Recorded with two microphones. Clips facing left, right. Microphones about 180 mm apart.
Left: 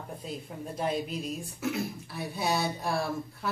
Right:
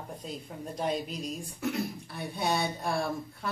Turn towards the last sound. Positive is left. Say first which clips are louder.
# even
turn(degrees=0)  # may be behind; listen again after turning